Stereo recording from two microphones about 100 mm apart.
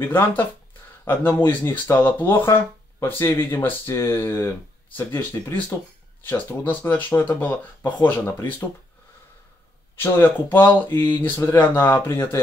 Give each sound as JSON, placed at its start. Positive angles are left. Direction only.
{"t": 0.0, "sound": "speech", "side_deg": 20}
{"t": 6.6, "sound": "speech", "side_deg": 20}
{"t": 9.9, "sound": "speech", "side_deg": 20}